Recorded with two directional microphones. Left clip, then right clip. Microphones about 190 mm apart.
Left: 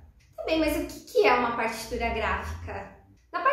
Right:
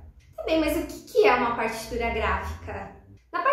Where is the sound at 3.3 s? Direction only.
Centre (ahead or behind).